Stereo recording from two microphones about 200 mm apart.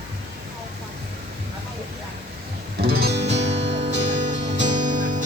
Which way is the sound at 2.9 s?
55° right (ahead or behind).